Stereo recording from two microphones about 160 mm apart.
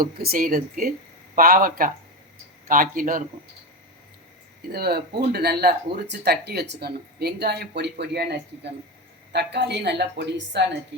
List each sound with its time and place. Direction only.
0.0 s speech: 70° right (ahead or behind)
4.7 s speech: 75° right (ahead or behind)